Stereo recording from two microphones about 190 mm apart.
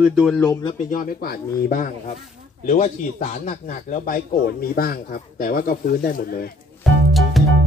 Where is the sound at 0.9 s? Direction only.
50° left (ahead or behind).